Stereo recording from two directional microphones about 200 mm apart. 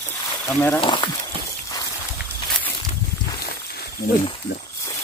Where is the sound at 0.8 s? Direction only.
25° left (ahead or behind).